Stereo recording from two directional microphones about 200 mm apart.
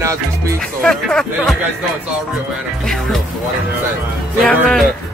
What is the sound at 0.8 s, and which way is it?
Speech, 5° left (ahead or behind).